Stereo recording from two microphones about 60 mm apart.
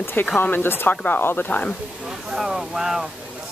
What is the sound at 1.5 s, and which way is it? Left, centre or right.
Speech, left.